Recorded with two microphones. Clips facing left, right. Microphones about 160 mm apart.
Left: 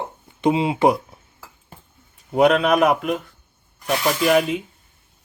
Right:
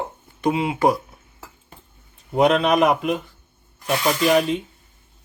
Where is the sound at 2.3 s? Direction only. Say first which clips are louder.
Left 1 dB; 5° left (ahead or behind).